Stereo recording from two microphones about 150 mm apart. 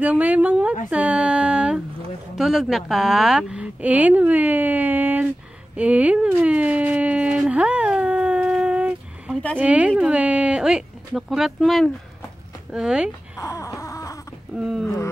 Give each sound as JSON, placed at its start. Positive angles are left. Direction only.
{"t": 0.0, "sound": "a woman's voice", "side_deg": -10}
{"t": 5.8, "sound": "a sound", "side_deg": -10}
{"t": 9.6, "sound": "a woman's voice", "side_deg": -10}
{"t": 13.4, "sound": "wail", "side_deg": 20}
{"t": 14.5, "sound": "speech", "side_deg": -5}